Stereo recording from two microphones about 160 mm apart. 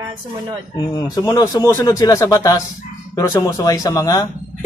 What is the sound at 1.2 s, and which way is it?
A man's voice, 20° left (ahead or behind).